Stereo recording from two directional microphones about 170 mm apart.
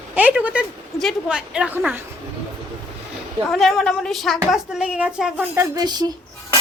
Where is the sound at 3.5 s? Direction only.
Centre (ahead or behind).